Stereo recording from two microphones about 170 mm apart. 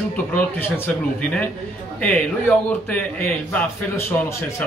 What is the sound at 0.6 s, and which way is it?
Speech, 10° left (ahead or behind).